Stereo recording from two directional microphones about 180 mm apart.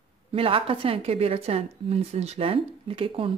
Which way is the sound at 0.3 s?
30° right (ahead or behind).